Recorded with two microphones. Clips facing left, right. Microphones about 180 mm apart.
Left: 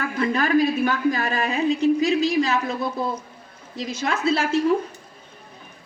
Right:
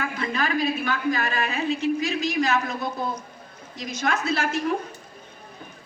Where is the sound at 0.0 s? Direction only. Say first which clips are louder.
Left 4 dB; 45° left (ahead or behind).